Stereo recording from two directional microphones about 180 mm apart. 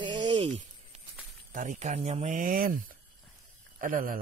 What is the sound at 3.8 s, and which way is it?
Speech, 50° right (ahead or behind).